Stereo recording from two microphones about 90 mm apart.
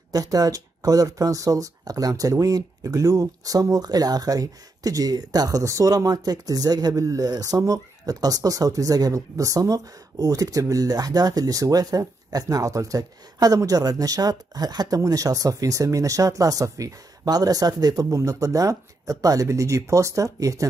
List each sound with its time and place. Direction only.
0.1 s speech: 45° right (ahead or behind)